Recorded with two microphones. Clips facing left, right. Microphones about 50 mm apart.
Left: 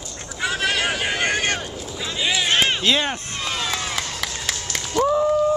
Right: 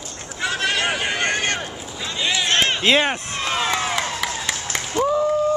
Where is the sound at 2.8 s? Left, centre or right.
Right.